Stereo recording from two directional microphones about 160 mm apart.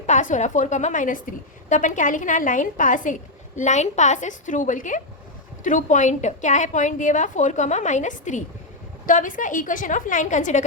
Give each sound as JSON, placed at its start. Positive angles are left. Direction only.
{"t": 0.0, "sound": "a woman's voice", "side_deg": 50}